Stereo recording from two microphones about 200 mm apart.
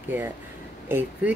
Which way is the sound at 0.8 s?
10° right (ahead or behind).